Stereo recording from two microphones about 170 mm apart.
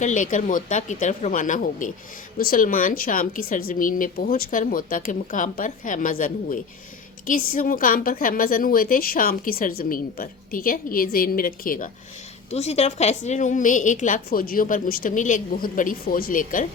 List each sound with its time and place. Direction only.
0.0 s a woman's voice: 50° left (ahead or behind)
12.5 s a woman's voice: 40° left (ahead or behind)